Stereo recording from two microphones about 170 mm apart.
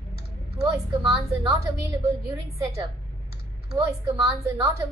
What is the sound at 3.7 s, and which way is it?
A woman's voice, 20° right (ahead or behind).